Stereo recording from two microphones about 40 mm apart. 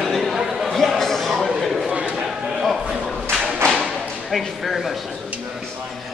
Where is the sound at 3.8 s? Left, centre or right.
Centre.